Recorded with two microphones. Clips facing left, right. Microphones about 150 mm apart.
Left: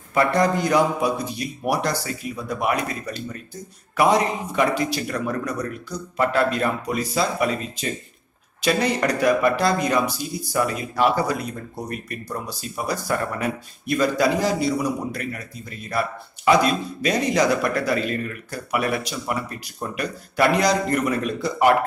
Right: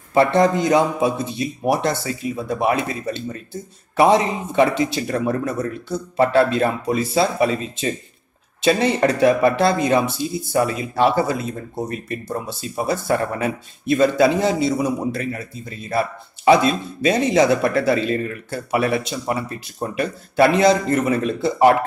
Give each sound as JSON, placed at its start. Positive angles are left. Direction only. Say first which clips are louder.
{"t": 0.1, "sound": "speech", "louder": "right 4 dB", "side_deg": -25}